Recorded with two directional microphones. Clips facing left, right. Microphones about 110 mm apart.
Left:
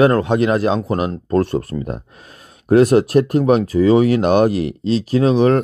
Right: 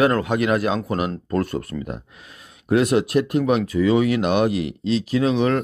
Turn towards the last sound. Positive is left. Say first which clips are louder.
# left 5 dB
turn(degrees=40)  # may be behind; listen again after turning